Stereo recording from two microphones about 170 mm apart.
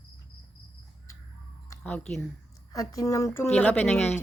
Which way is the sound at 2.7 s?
20° left (ahead or behind).